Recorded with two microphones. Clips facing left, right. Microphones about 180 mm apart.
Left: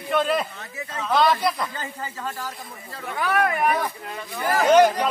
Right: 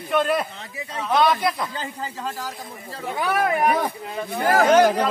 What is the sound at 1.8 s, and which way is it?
Speech, 20° right (ahead or behind).